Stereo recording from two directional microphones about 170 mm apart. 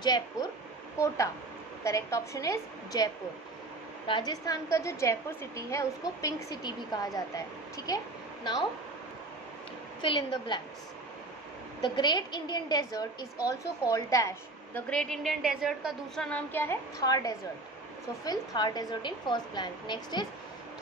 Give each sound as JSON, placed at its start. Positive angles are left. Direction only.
{"t": 0.0, "sound": "a woman's voice", "side_deg": 25}
{"t": 4.1, "sound": "a woman's voice", "side_deg": 25}
{"t": 10.0, "sound": "a woman's voice", "side_deg": 30}
{"t": 11.8, "sound": "a woman's voice", "side_deg": 25}
{"t": 14.9, "sound": "a woman's voice", "side_deg": 5}
{"t": 16.3, "sound": "a woman's voice", "side_deg": 10}